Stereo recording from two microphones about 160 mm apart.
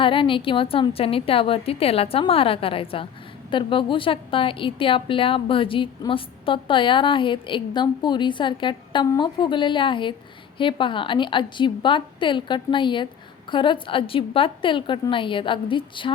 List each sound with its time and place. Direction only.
0.0 s a woman's voice: 30° left (ahead or behind)